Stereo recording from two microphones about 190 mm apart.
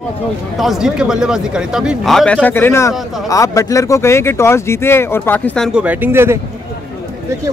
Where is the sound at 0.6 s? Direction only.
Centre (ahead or behind).